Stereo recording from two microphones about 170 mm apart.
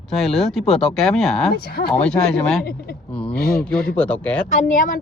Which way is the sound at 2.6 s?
65° left (ahead or behind).